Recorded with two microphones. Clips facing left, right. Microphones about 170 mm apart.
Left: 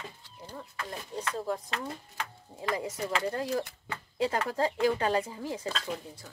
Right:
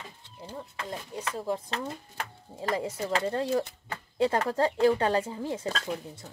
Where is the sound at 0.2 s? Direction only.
25° right (ahead or behind).